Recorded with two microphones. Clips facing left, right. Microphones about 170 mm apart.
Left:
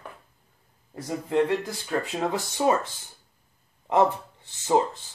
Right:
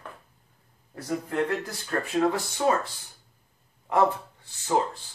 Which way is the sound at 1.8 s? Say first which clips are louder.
Right 3 dB; 15° left (ahead or behind).